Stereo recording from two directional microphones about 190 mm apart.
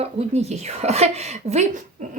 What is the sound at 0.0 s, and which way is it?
Speech, 35° right (ahead or behind).